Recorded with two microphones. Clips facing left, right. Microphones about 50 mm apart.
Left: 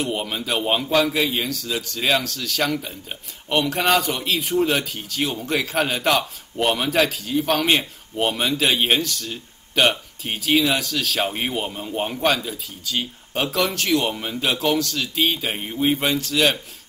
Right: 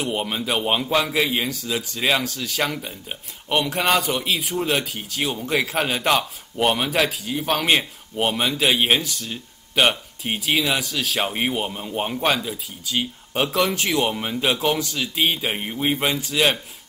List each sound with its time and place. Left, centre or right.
0.0 s a man's voice: centre